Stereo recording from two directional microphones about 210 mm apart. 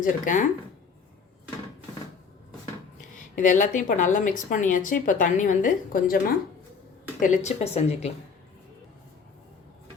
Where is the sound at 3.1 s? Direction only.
35° left (ahead or behind).